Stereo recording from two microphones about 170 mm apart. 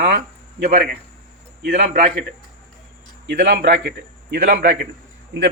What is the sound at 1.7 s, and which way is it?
Speech, 40° right (ahead or behind).